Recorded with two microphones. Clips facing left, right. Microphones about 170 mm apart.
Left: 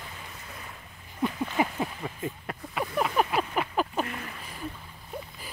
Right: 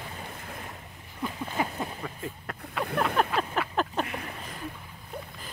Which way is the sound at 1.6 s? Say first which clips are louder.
Left 2 dB; 10° left (ahead or behind).